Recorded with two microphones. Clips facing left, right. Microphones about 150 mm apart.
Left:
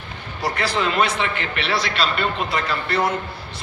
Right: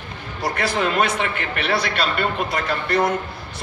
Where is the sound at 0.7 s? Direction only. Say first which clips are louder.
Even; 50° right (ahead or behind).